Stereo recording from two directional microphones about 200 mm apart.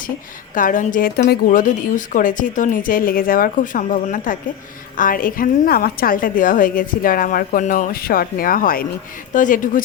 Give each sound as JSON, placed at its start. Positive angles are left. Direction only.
{"t": 0.5, "sound": "a woman's voice", "side_deg": 40}